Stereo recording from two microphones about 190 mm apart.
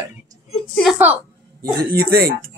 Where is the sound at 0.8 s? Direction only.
5° right (ahead or behind).